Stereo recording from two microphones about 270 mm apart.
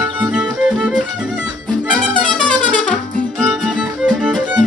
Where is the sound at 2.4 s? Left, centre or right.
Centre.